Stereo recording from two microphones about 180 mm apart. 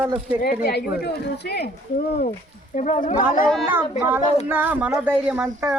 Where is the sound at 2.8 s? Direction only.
40° left (ahead or behind).